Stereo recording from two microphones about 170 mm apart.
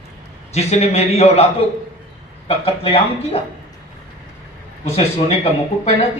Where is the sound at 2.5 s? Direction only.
35° left (ahead or behind).